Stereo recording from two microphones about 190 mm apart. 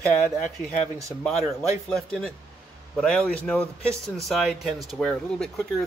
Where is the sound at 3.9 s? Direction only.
15° right (ahead or behind).